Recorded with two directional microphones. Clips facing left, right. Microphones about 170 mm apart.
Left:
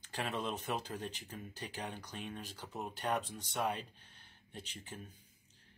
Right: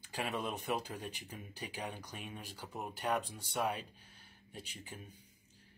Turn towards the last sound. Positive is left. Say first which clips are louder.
# left 1 dB
turn(degrees=-5)  # may be behind; listen again after turning